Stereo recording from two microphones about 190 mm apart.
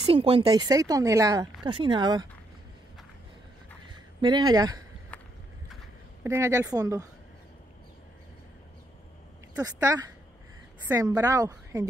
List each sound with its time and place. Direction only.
0.0 s speech: 30° right (ahead or behind)
4.2 s speech: 25° right (ahead or behind)
6.2 s a woman's voice: 15° right (ahead or behind)
9.6 s a woman's voice: 20° right (ahead or behind)